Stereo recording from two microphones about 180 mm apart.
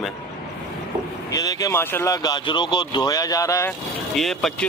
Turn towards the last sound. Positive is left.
turn(degrees=0)  # may be behind; listen again after turning